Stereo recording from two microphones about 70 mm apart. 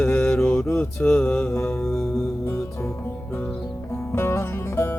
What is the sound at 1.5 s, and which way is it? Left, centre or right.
Mantra, left.